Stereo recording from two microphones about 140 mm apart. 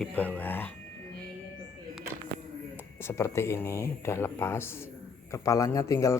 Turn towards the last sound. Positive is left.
turn(degrees=20)  # may be behind; listen again after turning